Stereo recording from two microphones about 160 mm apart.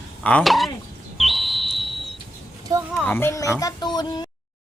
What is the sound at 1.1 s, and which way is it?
Whistle, centre (ahead or behind).